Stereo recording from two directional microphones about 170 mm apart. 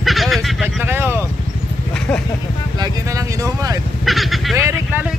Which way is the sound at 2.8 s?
20° right (ahead or behind).